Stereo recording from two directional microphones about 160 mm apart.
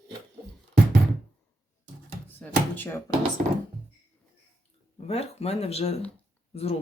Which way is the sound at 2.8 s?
15° left (ahead or behind).